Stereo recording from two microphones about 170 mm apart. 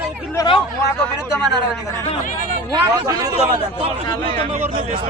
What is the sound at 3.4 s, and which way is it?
Speech, 35° right (ahead or behind).